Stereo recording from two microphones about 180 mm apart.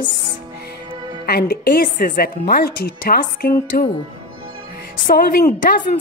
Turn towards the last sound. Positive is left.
turn(degrees=50)  # may be behind; listen again after turning